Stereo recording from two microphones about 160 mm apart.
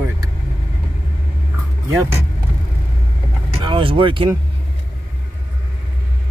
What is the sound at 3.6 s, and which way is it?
Speech, 30° right (ahead or behind).